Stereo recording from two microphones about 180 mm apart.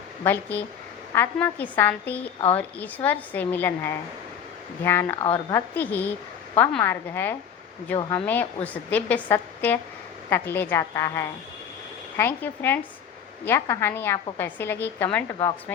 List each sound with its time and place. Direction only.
0.3 s a woman's voice: 10° left (ahead or behind)
5.2 s a woman's voice: 30° left (ahead or behind)
5.5 s a woman's voice: 10° left (ahead or behind)